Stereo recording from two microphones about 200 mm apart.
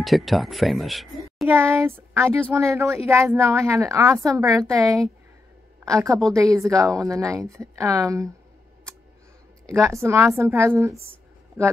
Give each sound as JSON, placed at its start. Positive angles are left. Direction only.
{"t": 0.0, "sound": "speech", "side_deg": 0}
{"t": 1.5, "sound": "a woman's voice", "side_deg": -10}
{"t": 9.7, "sound": "a woman's voice", "side_deg": -15}